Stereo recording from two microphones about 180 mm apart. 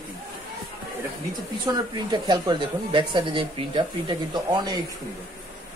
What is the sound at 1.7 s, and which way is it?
Speech, 20° right (ahead or behind).